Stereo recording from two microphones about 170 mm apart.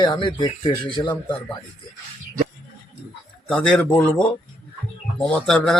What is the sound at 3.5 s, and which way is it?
Speech, 5° left (ahead or behind).